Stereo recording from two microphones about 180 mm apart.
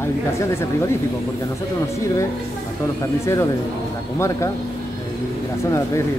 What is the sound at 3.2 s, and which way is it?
Speech, 15° left (ahead or behind).